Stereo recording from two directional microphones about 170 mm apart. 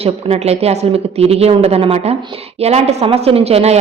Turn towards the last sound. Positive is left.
turn(degrees=-35)  # may be behind; listen again after turning